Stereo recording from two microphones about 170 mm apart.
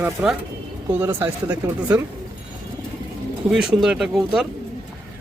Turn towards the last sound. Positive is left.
turn(degrees=0)  # may be behind; listen again after turning